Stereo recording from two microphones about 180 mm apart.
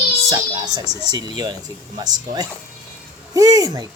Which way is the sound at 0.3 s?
20° right (ahead or behind).